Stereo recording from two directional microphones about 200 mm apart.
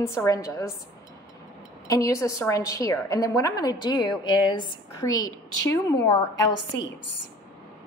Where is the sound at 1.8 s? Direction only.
15° left (ahead or behind).